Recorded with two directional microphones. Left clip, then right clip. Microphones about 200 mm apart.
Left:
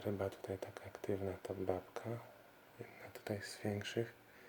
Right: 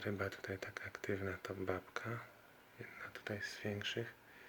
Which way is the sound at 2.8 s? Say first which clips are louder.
Right 3 dB; 20° left (ahead or behind).